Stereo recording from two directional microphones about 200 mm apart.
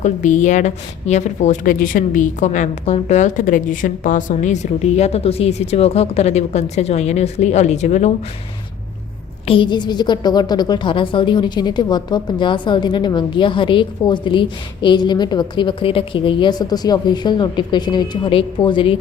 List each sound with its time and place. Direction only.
0.0 s a woman's voice: 40° left (ahead or behind)
9.5 s a woman's voice: 25° left (ahead or behind)